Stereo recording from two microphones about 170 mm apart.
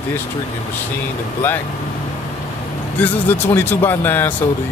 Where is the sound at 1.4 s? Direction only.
10° left (ahead or behind).